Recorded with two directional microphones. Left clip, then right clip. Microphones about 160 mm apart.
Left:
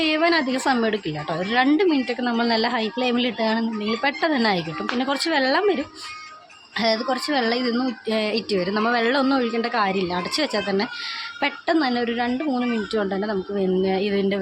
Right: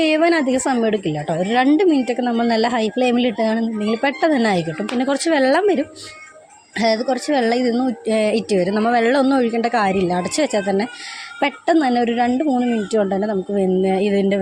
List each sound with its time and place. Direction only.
0.0 s a woman's voice: 35° right (ahead or behind)